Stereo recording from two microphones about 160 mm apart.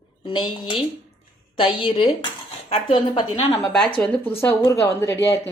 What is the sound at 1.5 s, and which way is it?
A woman's voice, 35° left (ahead or behind).